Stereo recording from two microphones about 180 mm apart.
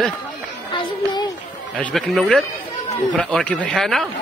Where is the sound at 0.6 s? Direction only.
25° left (ahead or behind).